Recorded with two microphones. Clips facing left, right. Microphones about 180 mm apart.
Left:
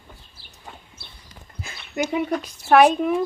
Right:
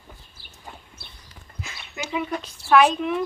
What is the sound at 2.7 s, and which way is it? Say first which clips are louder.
Speech: left 3 dB; 50° left (ahead or behind).